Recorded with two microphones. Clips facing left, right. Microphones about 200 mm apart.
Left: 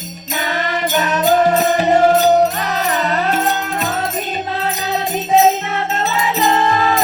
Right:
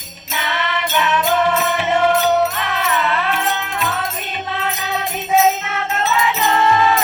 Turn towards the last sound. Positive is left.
turn(degrees=35)  # may be behind; listen again after turning